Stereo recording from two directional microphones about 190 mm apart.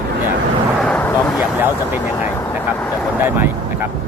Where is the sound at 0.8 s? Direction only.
5° left (ahead or behind).